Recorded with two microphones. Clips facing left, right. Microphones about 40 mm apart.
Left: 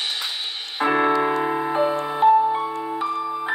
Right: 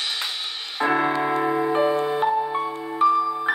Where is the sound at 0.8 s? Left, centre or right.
Left.